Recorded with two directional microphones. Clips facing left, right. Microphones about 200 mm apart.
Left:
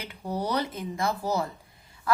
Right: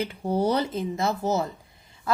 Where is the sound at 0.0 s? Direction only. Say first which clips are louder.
Right 7 dB; 30° right (ahead or behind).